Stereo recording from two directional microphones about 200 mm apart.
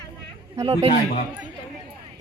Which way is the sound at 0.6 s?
30° right (ahead or behind).